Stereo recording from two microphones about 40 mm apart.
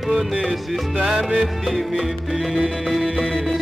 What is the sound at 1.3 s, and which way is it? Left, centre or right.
Music, centre.